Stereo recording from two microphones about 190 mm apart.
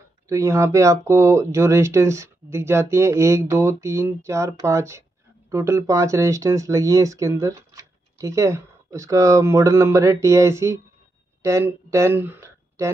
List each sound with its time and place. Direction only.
0.3 s speech: 15° right (ahead or behind)